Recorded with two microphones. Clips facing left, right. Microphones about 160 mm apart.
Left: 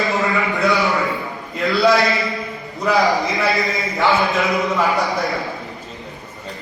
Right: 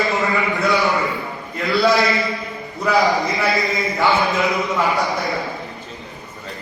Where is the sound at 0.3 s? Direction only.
Centre (ahead or behind).